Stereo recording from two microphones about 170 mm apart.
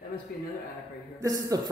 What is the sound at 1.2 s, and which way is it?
Speech, 20° right (ahead or behind).